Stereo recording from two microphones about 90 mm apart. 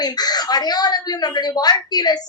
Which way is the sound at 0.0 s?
50° left (ahead or behind).